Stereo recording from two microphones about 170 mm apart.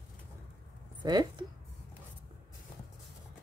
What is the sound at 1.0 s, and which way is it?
Speech, 25° right (ahead or behind).